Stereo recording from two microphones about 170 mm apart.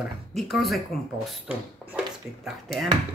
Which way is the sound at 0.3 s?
Centre (ahead or behind).